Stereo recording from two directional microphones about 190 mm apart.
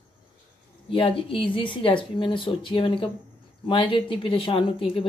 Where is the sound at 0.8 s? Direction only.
30° left (ahead or behind).